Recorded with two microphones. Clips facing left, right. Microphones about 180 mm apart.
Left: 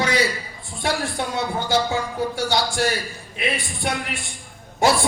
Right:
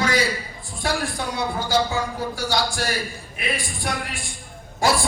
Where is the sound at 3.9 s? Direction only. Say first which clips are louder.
Left 2 dB; 20° left (ahead or behind).